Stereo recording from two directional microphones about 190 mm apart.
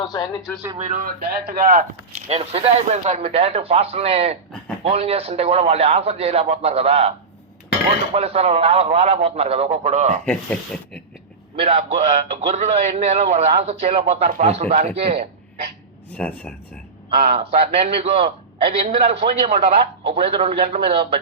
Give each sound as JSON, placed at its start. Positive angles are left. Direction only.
{"t": 0.8, "sound": "speech", "side_deg": -40}
{"t": 2.3, "sound": "a man's voice", "side_deg": -30}
{"t": 8.1, "sound": "a man's voice", "side_deg": -30}
{"t": 10.2, "sound": "speech", "side_deg": 5}
{"t": 11.5, "sound": "a man's voice", "side_deg": -30}
{"t": 16.1, "sound": "speech", "side_deg": 5}
{"t": 17.3, "sound": "a man's voice", "side_deg": -30}